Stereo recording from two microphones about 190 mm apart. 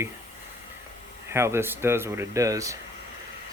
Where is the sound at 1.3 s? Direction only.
15° right (ahead or behind).